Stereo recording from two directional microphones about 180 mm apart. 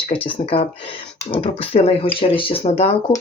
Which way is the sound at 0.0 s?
30° left (ahead or behind).